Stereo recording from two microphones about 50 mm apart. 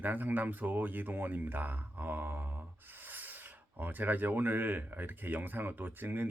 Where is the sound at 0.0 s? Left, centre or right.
Right.